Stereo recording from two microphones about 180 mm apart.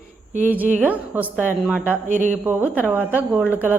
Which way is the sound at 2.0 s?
45° right (ahead or behind).